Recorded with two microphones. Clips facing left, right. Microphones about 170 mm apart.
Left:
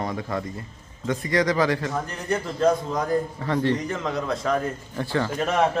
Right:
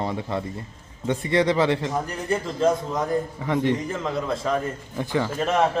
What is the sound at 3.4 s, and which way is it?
Speech, 15° right (ahead or behind).